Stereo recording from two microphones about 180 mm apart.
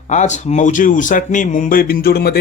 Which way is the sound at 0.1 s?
40° left (ahead or behind).